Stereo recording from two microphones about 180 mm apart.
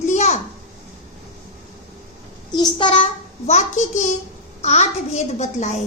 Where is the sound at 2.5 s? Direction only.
30° left (ahead or behind).